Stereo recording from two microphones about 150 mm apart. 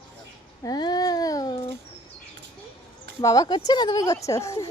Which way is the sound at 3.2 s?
25° left (ahead or behind).